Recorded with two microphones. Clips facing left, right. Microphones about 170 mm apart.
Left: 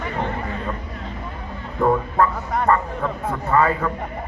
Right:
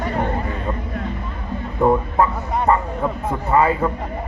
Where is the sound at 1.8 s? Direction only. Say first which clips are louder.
Right 2 dB; 20° right (ahead or behind).